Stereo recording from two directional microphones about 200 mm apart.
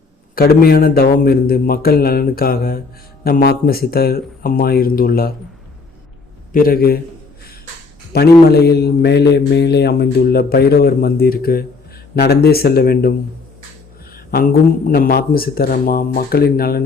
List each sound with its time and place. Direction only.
0.3 s mantra: 50° left (ahead or behind)
6.5 s mantra: 45° left (ahead or behind)
8.1 s mantra: 55° left (ahead or behind)
14.8 s mantra: 45° left (ahead or behind)